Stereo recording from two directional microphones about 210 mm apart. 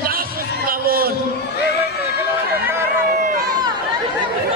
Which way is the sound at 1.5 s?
50° left (ahead or behind).